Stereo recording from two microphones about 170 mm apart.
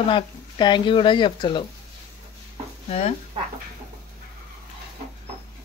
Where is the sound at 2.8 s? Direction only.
40° left (ahead or behind).